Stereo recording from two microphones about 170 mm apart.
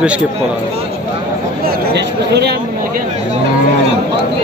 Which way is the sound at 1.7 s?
80° right.